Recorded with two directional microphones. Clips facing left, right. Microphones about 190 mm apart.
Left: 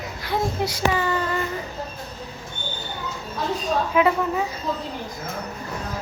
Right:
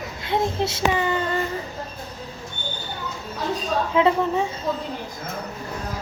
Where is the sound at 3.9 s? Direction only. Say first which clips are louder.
Right 2 dB; 25° right (ahead or behind).